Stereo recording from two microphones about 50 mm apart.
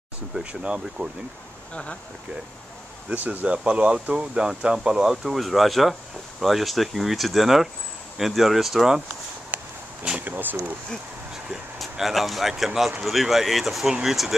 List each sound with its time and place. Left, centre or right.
0.4 s speech: right
1.7 s speech: left
3.4 s speech: right; by 9.0 s centre
9.5 s a sound: right
10.2 s speech: right
11.8 s speech: centre